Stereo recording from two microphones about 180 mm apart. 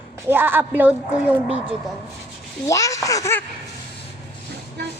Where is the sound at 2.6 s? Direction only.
20° left (ahead or behind).